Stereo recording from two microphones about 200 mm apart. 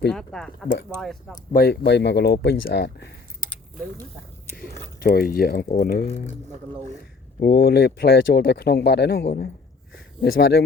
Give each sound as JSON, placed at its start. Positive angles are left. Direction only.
{"t": 0.1, "sound": "speech", "side_deg": 5}
{"t": 1.5, "sound": "speech", "side_deg": 50}
{"t": 4.5, "sound": "speech", "side_deg": 45}
{"t": 7.3, "sound": "speech", "side_deg": 50}
{"t": 9.9, "sound": "a sound", "side_deg": 50}